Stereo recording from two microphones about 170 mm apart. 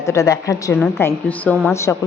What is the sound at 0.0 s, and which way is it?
A woman's voice, 20° left (ahead or behind).